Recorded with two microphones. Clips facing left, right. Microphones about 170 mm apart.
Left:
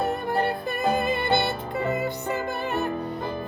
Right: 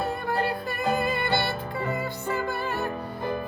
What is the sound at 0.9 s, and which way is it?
Music, 20° left (ahead or behind).